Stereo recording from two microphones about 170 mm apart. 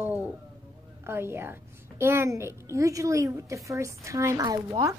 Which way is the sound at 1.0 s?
15° right (ahead or behind).